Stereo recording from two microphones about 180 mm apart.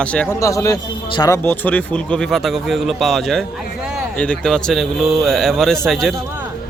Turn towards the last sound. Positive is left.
turn(degrees=0)  # may be behind; listen again after turning